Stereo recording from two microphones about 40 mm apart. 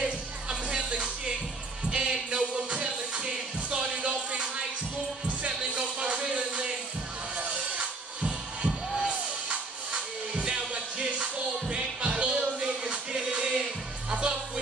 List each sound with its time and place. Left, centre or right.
0.0 s music: right